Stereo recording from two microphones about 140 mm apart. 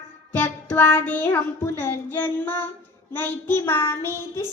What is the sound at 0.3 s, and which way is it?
Child singing, 15° left (ahead or behind).